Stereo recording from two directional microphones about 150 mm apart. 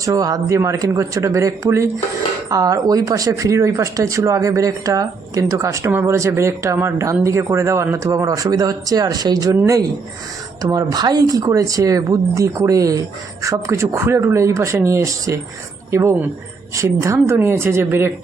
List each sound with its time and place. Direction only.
0.0 s a woman's voice: 25° right (ahead or behind)